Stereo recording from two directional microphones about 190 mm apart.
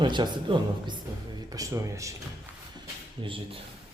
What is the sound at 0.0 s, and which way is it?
A woman's voice, 25° right (ahead or behind).